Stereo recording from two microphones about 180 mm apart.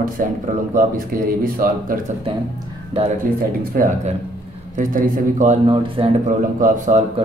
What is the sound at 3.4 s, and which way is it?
A man's voice, 50° right (ahead or behind).